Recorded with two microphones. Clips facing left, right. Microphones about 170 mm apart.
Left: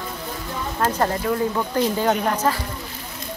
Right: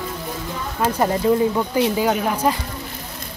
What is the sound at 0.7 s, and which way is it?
Speech, 10° right (ahead or behind).